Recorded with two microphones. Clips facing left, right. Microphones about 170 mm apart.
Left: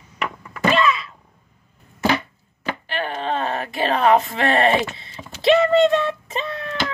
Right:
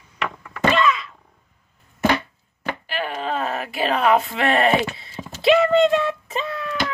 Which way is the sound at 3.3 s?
30° left (ahead or behind).